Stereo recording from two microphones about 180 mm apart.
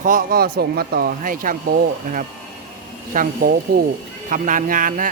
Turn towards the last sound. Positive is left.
turn(degrees=-50)  # may be behind; listen again after turning